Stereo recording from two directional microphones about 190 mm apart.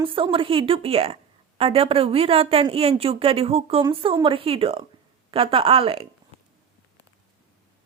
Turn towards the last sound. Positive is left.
turn(degrees=-30)  # may be behind; listen again after turning